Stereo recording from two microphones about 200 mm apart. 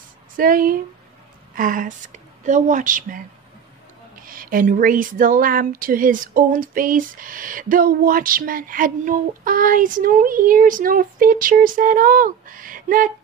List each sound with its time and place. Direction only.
0.4 s speech: 45° right (ahead or behind)